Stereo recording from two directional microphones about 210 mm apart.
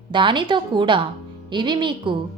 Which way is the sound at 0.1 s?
25° right (ahead or behind).